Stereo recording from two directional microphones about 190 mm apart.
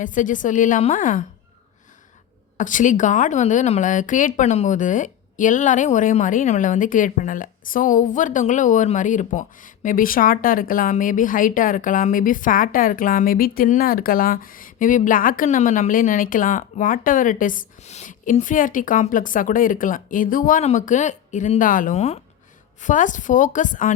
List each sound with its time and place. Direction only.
0.0 s a woman's voice: 45° left (ahead or behind)
2.6 s a woman's voice: 40° left (ahead or behind)